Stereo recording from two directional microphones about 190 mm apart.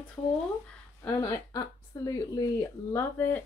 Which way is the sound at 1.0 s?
15° left (ahead or behind).